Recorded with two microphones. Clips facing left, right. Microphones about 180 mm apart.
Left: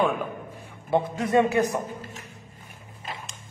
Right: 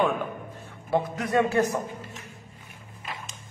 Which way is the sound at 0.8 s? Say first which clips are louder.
Left 2 dB; 25° left (ahead or behind).